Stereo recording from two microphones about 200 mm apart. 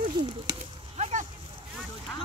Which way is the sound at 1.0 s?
35° right (ahead or behind).